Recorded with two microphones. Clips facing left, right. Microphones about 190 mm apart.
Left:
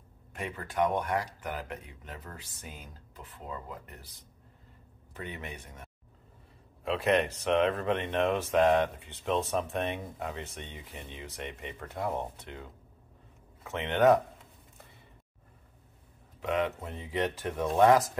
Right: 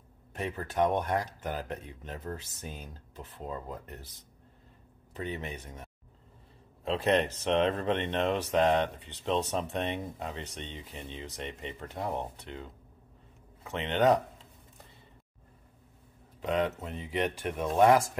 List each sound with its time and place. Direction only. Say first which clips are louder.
0.7 s speech: right 1 dB; 25° right (ahead or behind)
1.4 s speech: right 2 dB; 40° right (ahead or behind)
2.0 s speech: right 8 dB; 25° right (ahead or behind)
5.1 s speech: right 4 dB; 25° right (ahead or behind)
13.7 s speech: left 2 dB; 20° right (ahead or behind)
16.3 s a sound: right 1 dB; 35° right (ahead or behind)
16.8 s speech: even; 15° right (ahead or behind)